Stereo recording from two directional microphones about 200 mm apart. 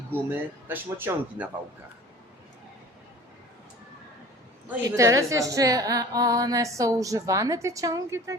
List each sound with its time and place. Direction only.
0.3 s a woman's voice: 10° right (ahead or behind)
4.7 s a woman's voice: 15° right (ahead or behind)